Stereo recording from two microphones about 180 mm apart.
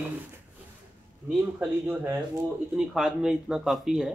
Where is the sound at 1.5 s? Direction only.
10° right (ahead or behind).